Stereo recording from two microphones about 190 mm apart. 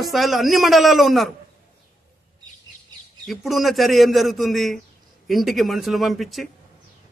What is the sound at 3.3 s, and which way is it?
A man's voice, centre (ahead or behind).